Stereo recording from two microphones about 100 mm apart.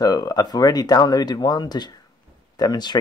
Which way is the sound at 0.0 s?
40° left (ahead or behind).